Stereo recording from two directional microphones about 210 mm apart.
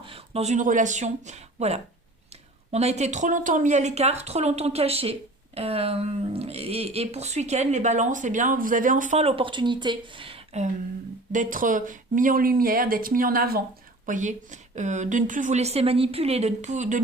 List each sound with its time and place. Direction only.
0.0 s speech: 25° right (ahead or behind)